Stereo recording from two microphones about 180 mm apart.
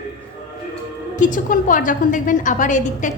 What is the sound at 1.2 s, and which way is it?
A woman's voice, 45° left (ahead or behind).